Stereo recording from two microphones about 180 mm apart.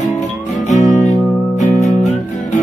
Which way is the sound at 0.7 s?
40° left (ahead or behind).